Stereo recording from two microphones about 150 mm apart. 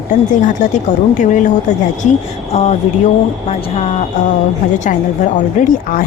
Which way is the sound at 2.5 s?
45° left (ahead or behind).